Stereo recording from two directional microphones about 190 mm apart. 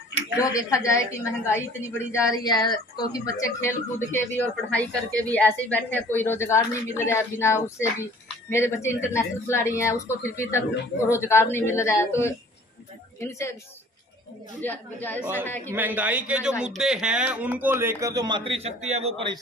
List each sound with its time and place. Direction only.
0.4 s a woman's voice: 20° left (ahead or behind)
14.6 s a woman's voice: 10° left (ahead or behind)
15.7 s speech: 10° right (ahead or behind); by 19.3 s 30° right (ahead or behind)